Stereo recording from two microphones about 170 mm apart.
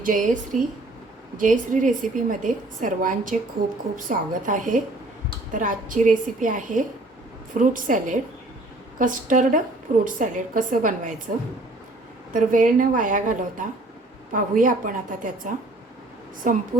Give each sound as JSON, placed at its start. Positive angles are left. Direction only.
{"t": 0.0, "sound": "a woman's voice", "side_deg": -50}
{"t": 12.3, "sound": "a woman's voice", "side_deg": -50}